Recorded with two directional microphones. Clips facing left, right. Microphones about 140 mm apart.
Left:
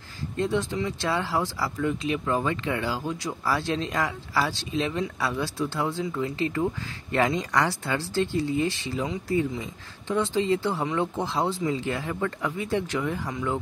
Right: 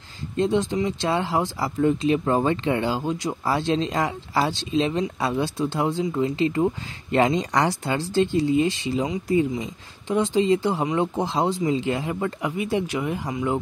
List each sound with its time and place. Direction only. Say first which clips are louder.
0.4 s speech: right 5 dB; 20° right (ahead or behind)